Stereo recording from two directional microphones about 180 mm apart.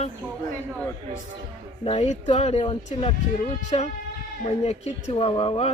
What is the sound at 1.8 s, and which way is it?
Speech, 35° left (ahead or behind).